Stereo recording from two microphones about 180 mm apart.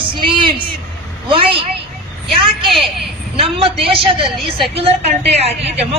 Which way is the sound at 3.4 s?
30° right (ahead or behind).